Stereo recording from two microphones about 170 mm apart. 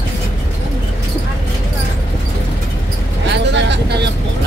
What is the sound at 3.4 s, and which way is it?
Speech, 90° right.